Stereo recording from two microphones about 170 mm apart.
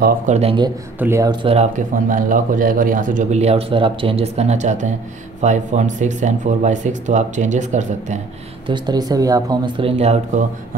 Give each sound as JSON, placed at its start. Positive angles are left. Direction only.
{"t": 0.3, "sound": "speech", "side_deg": -35}
{"t": 0.9, "sound": "speech", "side_deg": -15}
{"t": 1.3, "sound": "speech", "side_deg": -35}
{"t": 2.0, "sound": "a man's voice", "side_deg": -50}
{"t": 8.6, "sound": "speech", "side_deg": -25}